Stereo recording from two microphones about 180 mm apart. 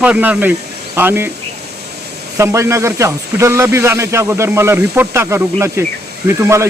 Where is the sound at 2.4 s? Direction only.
15° right (ahead or behind).